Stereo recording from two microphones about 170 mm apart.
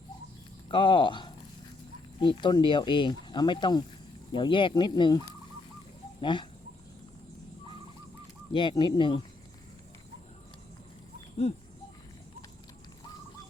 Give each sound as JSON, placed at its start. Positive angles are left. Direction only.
{"t": 0.7, "sound": "speech", "side_deg": 30}
{"t": 6.2, "sound": "speech", "side_deg": 30}
{"t": 8.5, "sound": "speech", "side_deg": 25}